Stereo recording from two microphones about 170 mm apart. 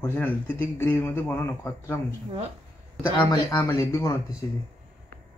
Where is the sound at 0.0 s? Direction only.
10° left (ahead or behind).